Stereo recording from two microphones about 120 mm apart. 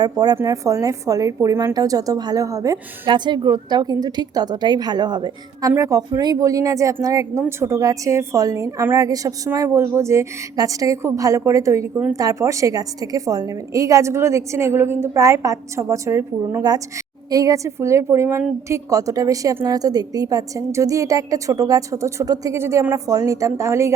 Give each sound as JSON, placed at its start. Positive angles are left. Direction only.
{"t": 0.0, "sound": "a woman's voice", "side_deg": -35}
{"t": 3.1, "sound": "a woman's voice", "side_deg": -40}
{"t": 5.7, "sound": "a woman's voice", "side_deg": -25}